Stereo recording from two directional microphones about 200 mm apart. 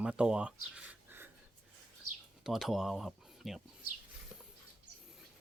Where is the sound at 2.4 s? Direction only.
Centre (ahead or behind).